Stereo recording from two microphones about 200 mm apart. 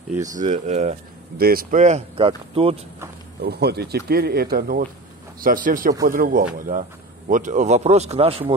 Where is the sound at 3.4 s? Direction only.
55° right (ahead or behind).